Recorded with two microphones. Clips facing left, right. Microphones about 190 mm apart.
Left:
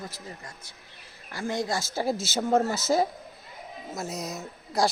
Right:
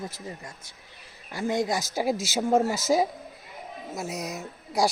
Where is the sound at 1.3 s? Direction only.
20° right (ahead or behind).